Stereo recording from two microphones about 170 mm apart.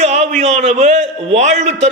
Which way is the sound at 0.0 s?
40° right (ahead or behind).